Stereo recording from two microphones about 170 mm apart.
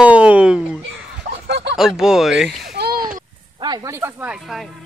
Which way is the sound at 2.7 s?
65° right (ahead or behind).